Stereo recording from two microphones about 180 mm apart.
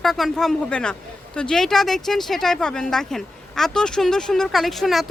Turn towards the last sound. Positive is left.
turn(degrees=0)  # may be behind; listen again after turning